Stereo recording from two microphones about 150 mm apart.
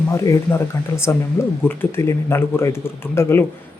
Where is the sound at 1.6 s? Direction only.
15° left (ahead or behind).